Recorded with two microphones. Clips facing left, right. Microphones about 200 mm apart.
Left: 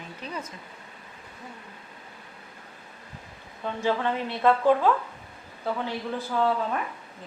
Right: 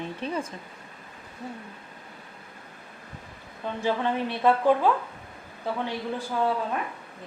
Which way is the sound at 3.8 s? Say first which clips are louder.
Even; 15° right (ahead or behind).